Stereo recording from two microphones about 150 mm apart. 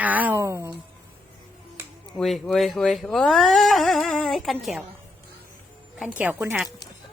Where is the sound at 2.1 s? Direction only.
Centre (ahead or behind).